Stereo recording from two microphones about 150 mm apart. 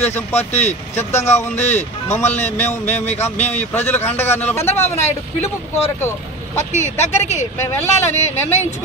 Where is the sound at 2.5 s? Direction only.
15° left (ahead or behind).